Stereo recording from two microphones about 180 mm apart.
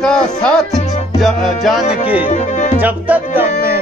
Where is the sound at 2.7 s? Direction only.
10° right (ahead or behind).